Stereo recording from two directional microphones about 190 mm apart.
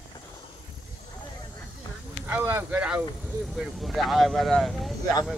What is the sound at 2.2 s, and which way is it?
Speech, 10° right (ahead or behind).